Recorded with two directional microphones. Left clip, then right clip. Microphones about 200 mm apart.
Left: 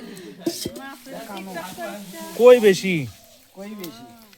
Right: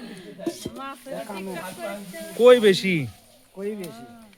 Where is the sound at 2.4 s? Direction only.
10° left (ahead or behind).